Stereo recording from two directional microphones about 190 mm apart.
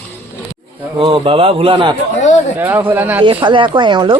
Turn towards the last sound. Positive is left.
turn(degrees=-25)  # may be behind; listen again after turning